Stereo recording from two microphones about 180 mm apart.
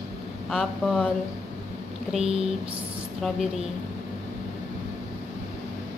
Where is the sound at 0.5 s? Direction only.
Centre (ahead or behind).